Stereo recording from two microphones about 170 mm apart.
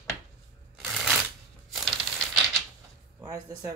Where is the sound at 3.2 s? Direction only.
20° right (ahead or behind).